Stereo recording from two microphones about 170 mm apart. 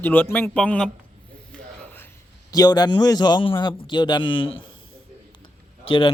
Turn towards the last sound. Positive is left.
turn(degrees=30)  # may be behind; listen again after turning